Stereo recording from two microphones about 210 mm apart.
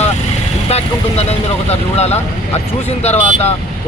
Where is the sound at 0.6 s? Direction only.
30° left (ahead or behind).